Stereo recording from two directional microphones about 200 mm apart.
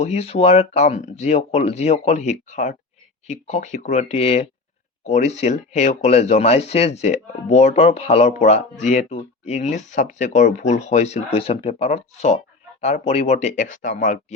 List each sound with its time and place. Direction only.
0.0 s speech: 35° left (ahead or behind)